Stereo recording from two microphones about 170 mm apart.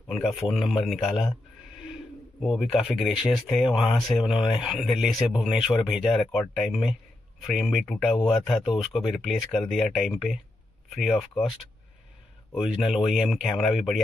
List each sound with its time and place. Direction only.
0.1 s speech: centre (ahead or behind)
2.4 s speech: centre (ahead or behind)
12.5 s speech: centre (ahead or behind)